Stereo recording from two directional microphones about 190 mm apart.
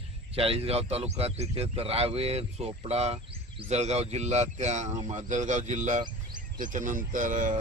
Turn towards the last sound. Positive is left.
turn(degrees=-45)  # may be behind; listen again after turning